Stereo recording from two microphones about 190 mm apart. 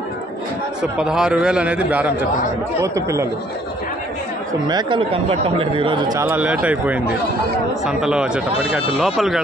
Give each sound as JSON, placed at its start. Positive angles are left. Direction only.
{"t": 0.9, "sound": "a man's voice", "side_deg": -5}
{"t": 4.6, "sound": "speech", "side_deg": -25}